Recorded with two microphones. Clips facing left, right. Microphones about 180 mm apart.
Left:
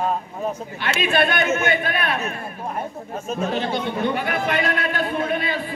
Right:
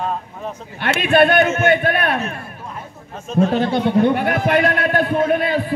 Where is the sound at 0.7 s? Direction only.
55° right (ahead or behind).